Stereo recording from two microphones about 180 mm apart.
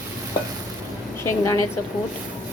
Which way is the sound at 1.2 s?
15° left (ahead or behind).